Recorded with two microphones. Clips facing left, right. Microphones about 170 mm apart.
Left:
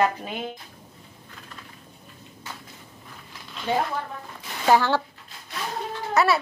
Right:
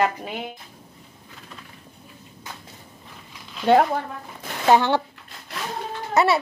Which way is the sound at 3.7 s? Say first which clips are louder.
Right 9 dB; 65° right (ahead or behind).